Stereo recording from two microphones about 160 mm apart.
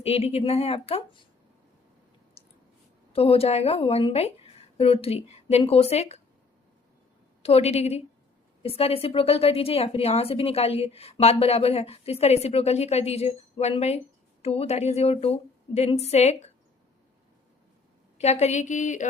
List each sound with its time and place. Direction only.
0.0 s a woman's voice: 40° left (ahead or behind)
3.1 s a woman's voice: 35° left (ahead or behind)
7.4 s a woman's voice: 40° left (ahead or behind)
18.2 s a woman's voice: 45° left (ahead or behind)